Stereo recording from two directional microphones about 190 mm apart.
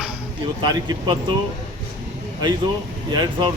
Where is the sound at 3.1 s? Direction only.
25° right (ahead or behind).